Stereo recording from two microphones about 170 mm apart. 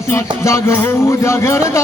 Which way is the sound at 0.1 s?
15° left (ahead or behind).